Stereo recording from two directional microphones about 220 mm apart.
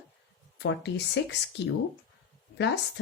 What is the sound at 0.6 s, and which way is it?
Speech, 50° left (ahead or behind).